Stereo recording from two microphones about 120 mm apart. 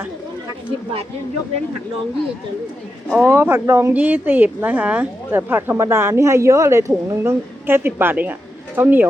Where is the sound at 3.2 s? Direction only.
20° right (ahead or behind).